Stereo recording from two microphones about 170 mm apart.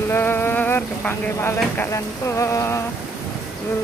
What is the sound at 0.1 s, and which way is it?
Speech, 15° left (ahead or behind).